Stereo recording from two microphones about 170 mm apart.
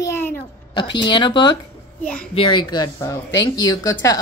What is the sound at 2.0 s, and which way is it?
Speech, 5° left (ahead or behind).